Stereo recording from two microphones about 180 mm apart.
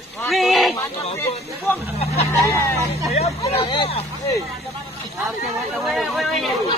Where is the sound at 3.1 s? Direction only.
35° left (ahead or behind).